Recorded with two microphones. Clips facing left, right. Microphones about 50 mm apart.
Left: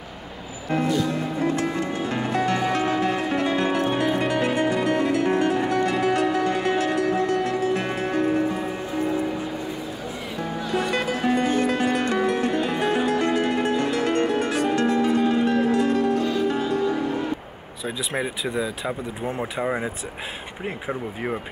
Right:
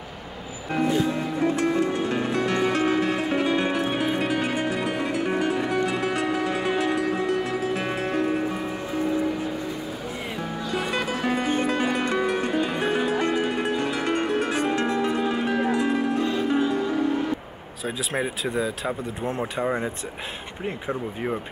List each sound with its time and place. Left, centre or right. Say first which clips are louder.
0.8 s music: right 2 dB; right
1.4 s music: right 3 dB; centre
10.7 s music: left 3 dB; centre
17.8 s speech: even; centre